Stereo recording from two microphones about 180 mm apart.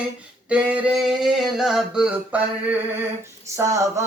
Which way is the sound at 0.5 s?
5° right (ahead or behind).